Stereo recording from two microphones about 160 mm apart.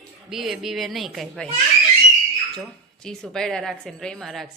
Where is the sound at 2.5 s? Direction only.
5° left (ahead or behind).